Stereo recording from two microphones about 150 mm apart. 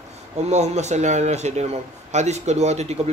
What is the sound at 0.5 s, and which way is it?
Speech, 50° right (ahead or behind).